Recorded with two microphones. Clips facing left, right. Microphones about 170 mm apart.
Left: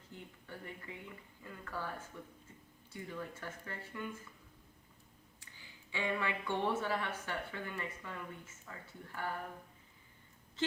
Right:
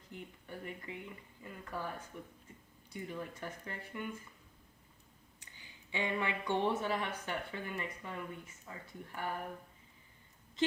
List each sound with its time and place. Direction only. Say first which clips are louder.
0.1 s speech: right 3 dB; 15° right (ahead or behind)
5.4 s speech: even; 20° right (ahead or behind)